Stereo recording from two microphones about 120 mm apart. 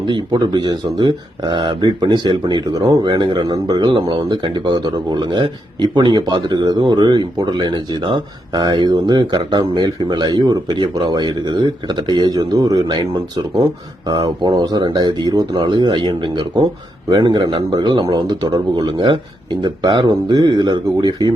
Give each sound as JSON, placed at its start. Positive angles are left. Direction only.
{"t": 0.1, "sound": "speech", "side_deg": -40}